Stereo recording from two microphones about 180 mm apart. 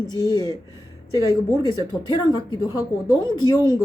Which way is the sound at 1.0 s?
20° right (ahead or behind).